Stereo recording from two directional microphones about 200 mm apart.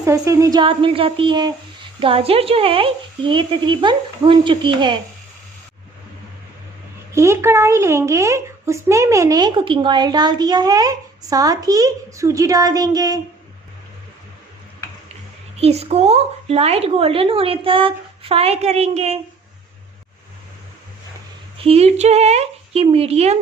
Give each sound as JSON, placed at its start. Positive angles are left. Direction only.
{"t": 0.0, "sound": "a woman's voice", "side_deg": -15}
{"t": 7.1, "sound": "speech", "side_deg": -15}
{"t": 15.5, "sound": "speech", "side_deg": -30}
{"t": 21.6, "sound": "speech", "side_deg": -30}